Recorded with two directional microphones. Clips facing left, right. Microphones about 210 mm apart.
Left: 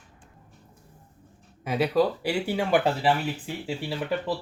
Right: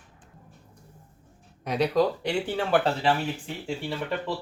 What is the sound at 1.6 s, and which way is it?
Speech, 5° left (ahead or behind).